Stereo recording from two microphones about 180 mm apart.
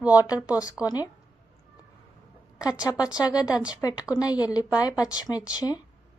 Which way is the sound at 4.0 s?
20° left (ahead or behind).